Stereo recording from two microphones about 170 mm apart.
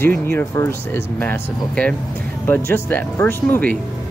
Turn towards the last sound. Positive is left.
turn(degrees=15)  # may be behind; listen again after turning